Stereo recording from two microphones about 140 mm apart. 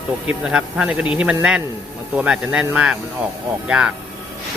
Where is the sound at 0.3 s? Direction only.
5° right (ahead or behind).